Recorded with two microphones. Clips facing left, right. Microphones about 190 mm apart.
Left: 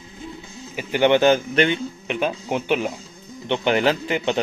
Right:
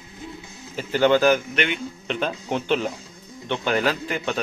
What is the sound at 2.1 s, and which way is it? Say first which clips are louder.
A man's voice: left 2 dB; 10° left (ahead or behind).